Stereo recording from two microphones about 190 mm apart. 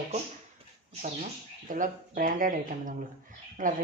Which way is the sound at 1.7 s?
45° right (ahead or behind).